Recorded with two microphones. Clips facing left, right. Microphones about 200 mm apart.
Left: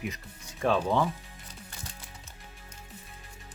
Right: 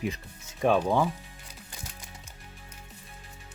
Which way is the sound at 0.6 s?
15° right (ahead or behind).